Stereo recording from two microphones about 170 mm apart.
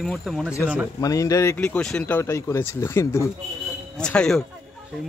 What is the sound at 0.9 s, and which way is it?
Speech, 20° left (ahead or behind).